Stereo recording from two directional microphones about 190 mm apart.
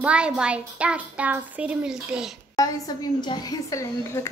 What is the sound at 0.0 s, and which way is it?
A child's voice, 5° right (ahead or behind).